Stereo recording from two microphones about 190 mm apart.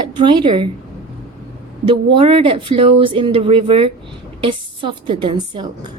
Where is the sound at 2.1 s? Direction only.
30° right (ahead or behind).